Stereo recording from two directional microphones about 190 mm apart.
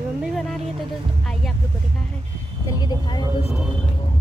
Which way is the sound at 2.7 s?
20° left (ahead or behind).